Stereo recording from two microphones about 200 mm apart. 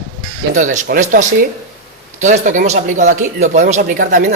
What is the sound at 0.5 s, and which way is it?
Speech, 40° right (ahead or behind).